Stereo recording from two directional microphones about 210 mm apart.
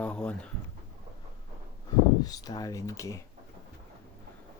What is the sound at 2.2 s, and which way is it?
Speech, 20° left (ahead or behind).